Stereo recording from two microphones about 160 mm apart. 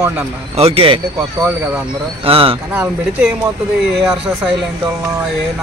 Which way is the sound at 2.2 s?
35° right (ahead or behind).